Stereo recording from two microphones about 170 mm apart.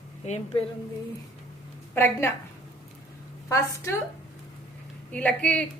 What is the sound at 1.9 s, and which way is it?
Speech, 15° left (ahead or behind).